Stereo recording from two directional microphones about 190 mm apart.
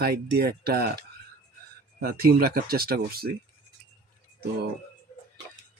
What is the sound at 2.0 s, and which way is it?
Speech, 55° right (ahead or behind).